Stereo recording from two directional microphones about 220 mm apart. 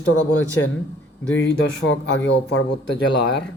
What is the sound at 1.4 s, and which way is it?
Speech, 60° left (ahead or behind).